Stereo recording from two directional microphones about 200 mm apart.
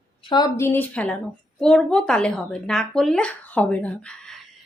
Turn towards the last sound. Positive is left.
turn(degrees=5)  # may be behind; listen again after turning